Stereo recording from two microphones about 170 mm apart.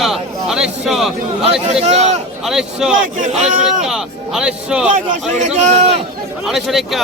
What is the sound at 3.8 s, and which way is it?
Speech, 5° right (ahead or behind).